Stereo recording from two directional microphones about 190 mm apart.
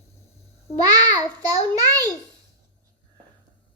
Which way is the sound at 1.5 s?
20° right (ahead or behind).